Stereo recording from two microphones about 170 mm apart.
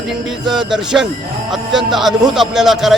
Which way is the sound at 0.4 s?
5° right (ahead or behind).